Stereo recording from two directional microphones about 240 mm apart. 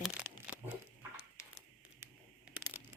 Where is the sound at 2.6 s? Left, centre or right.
Centre.